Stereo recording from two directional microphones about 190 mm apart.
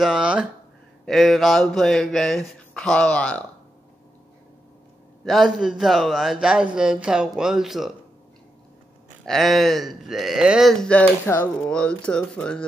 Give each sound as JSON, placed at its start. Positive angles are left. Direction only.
{"t": 0.0, "sound": "speech", "side_deg": -5}
{"t": 5.2, "sound": "speech", "side_deg": 0}
{"t": 9.2, "sound": "speech", "side_deg": 0}